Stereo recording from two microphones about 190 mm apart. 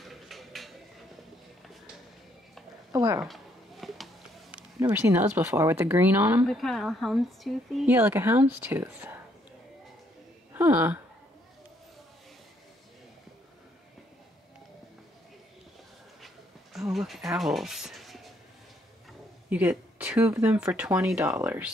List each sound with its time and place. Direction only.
0.0 s a sound: centre (ahead or behind)
2.9 s speech: 15° right (ahead or behind)
3.3 s a sound: centre (ahead or behind)
4.7 s speech: 15° right (ahead or behind); by 7.9 s centre (ahead or behind)
7.9 s speech: 10° right (ahead or behind)
10.5 s speech: 10° right (ahead or behind)
16.9 s speech: centre (ahead or behind)
17.4 s a sound: centre (ahead or behind)
19.5 s speech: 5° right (ahead or behind)